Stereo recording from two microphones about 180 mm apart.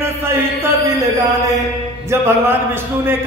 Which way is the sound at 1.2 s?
20° right (ahead or behind).